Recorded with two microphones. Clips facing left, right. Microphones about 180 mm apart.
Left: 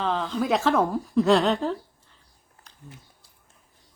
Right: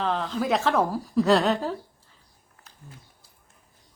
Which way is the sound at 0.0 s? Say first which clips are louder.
Left 1 dB; centre (ahead or behind).